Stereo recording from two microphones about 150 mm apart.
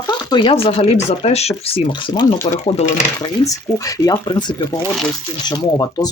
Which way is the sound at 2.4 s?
45° left (ahead or behind).